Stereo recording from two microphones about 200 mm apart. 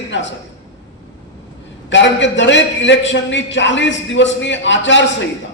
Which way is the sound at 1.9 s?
65° left (ahead or behind).